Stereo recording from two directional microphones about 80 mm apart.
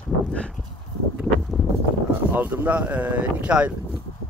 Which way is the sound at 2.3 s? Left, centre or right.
Right.